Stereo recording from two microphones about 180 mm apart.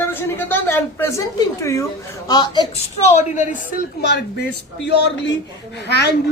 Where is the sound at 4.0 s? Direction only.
65° left (ahead or behind).